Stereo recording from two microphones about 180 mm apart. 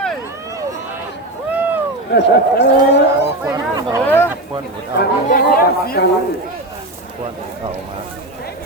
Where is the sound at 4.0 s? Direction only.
10° left (ahead or behind).